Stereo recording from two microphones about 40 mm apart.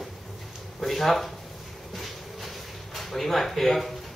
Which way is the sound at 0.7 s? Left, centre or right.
Centre.